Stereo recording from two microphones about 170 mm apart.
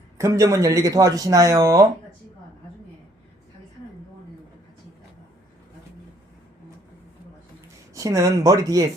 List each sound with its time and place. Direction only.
0.2 s speech: 20° right (ahead or behind)
7.9 s speech: 20° right (ahead or behind)